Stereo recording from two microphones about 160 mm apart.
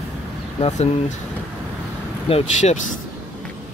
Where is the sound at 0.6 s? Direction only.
40° left (ahead or behind).